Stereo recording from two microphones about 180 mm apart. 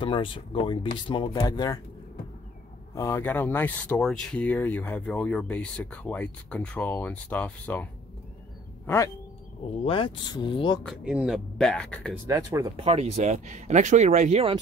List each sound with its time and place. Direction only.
0.0 s speech: 30° left (ahead or behind)
2.9 s speech: 15° left (ahead or behind)
9.8 s speech: 30° left (ahead or behind)
10.8 s speech: centre (ahead or behind)
12.3 s speech: 15° right (ahead or behind)
12.7 s speech: 35° right (ahead or behind)